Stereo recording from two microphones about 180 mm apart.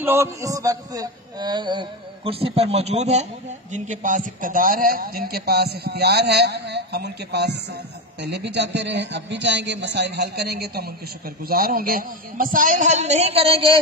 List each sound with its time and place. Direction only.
0.0 s a man's voice: 15° right (ahead or behind); by 13.7 s 30° right (ahead or behind)